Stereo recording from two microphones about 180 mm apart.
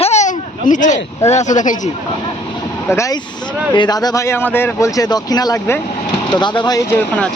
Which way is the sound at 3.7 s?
25° left (ahead or behind).